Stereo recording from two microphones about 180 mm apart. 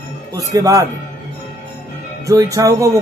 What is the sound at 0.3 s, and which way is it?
Speech, 20° right (ahead or behind).